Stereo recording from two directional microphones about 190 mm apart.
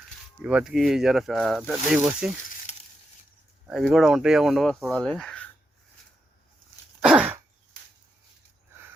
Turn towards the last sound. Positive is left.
turn(degrees=-5)  # may be behind; listen again after turning